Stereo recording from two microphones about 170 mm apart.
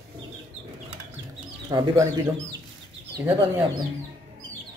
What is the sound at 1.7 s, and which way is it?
Speech, 25° right (ahead or behind).